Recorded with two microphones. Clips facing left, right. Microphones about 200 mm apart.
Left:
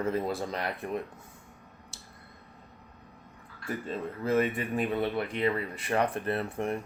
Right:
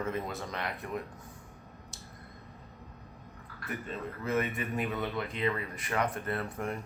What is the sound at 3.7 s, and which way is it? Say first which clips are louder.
Speech: left 4 dB; 30° left (ahead or behind).